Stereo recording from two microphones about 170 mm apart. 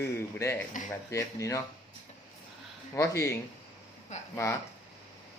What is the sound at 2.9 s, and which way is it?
Speech, 20° left (ahead or behind).